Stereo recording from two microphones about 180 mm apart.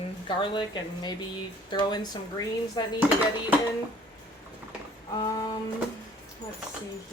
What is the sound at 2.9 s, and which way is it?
Speech, 10° right (ahead or behind).